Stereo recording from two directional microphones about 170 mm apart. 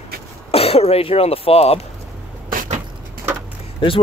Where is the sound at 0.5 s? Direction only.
35° left (ahead or behind).